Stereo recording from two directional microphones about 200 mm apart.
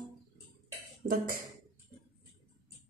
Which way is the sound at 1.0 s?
45° right (ahead or behind).